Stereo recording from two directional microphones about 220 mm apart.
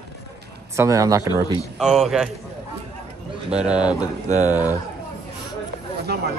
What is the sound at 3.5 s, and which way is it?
Speech, 5° right (ahead or behind).